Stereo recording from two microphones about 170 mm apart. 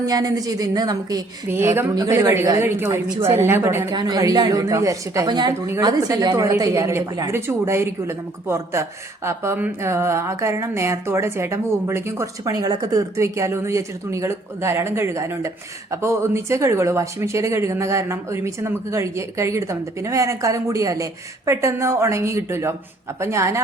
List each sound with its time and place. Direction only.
0.0 s speech: 20° right (ahead or behind)